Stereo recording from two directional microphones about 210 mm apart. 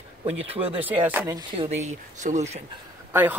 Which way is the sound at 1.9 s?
35° right (ahead or behind).